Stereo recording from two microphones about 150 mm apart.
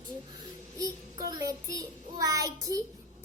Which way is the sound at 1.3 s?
25° right (ahead or behind).